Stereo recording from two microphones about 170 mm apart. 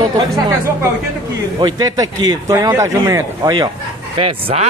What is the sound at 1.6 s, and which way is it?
A man's voice, 25° right (ahead or behind).